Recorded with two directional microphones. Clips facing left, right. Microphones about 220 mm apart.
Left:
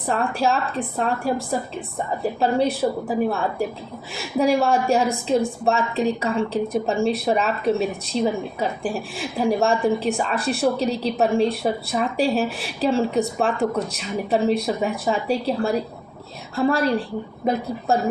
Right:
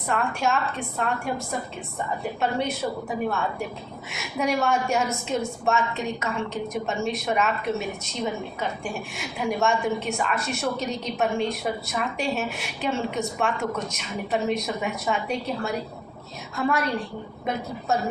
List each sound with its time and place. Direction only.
0.1 s a woman's voice: 35° left (ahead or behind)